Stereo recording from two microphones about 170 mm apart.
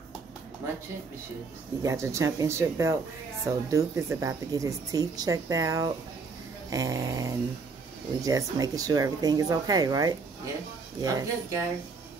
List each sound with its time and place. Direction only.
1.8 s speech: 20° right (ahead or behind)